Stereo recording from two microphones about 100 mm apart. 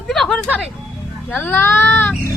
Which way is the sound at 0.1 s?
5° left (ahead or behind).